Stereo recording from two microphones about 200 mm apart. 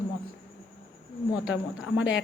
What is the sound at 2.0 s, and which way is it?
Speech, 70° left (ahead or behind).